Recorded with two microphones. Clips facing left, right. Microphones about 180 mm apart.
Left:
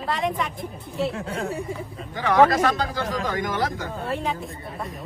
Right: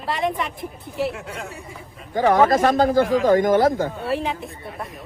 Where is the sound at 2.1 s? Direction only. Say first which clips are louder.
Right 2 dB; 45° right (ahead or behind).